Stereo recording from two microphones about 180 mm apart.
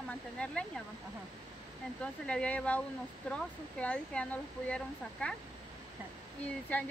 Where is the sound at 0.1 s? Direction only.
5° left (ahead or behind).